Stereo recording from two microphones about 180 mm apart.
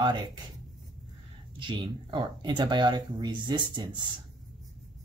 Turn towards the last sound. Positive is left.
turn(degrees=-25)  # may be behind; listen again after turning